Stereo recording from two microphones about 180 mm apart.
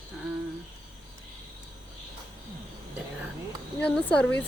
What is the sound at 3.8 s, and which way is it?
Speech, 10° left (ahead or behind).